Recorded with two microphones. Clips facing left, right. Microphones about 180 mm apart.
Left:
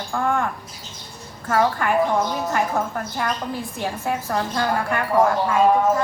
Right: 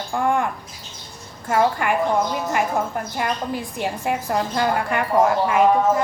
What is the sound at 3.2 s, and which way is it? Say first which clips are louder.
A woman's voice: right 1 dB; 15° right (ahead or behind).